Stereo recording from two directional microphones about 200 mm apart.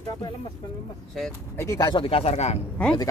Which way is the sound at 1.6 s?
15° left (ahead or behind).